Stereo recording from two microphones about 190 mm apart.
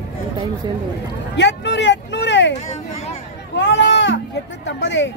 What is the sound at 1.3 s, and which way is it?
Vehicle, 65° left (ahead or behind).